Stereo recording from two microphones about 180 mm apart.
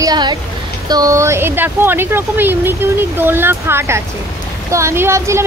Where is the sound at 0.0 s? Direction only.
25° right (ahead or behind).